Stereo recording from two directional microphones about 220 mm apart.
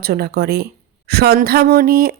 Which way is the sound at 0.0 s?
45° right (ahead or behind).